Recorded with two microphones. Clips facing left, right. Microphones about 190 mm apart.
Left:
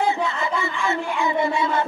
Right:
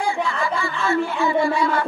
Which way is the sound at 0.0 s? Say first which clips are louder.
Even; 20° left (ahead or behind).